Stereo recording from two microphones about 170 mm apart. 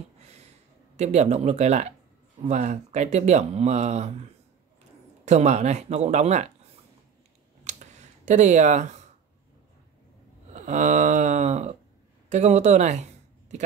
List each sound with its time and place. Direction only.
0.9 s speech: 40° right (ahead or behind)
5.2 s speech: 40° right (ahead or behind)
7.6 s a sound: 45° right (ahead or behind)
10.5 s speech: 45° right (ahead or behind)